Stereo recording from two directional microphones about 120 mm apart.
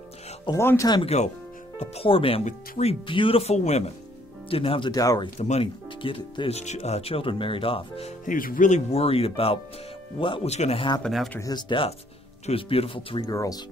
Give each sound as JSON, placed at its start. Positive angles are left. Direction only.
{"t": 0.5, "sound": "speech", "side_deg": 25}
{"t": 1.0, "sound": "speech", "side_deg": 65}
{"t": 1.8, "sound": "speech", "side_deg": 55}
{"t": 3.5, "sound": "speech", "side_deg": 65}
{"t": 4.5, "sound": "speech", "side_deg": 50}
{"t": 4.9, "sound": "speech", "side_deg": 30}
{"t": 5.4, "sound": "speech", "side_deg": 70}
{"t": 6.0, "sound": "speech", "side_deg": 45}
{"t": 6.5, "sound": "speech", "side_deg": 65}
{"t": 8.3, "sound": "speech", "side_deg": 90}
{"t": 10.5, "sound": "speech", "side_deg": 65}
{"t": 11.0, "sound": "speech", "side_deg": 0}
{"t": 11.5, "sound": "speech", "side_deg": 45}
{"t": 13.3, "sound": "speech", "side_deg": 30}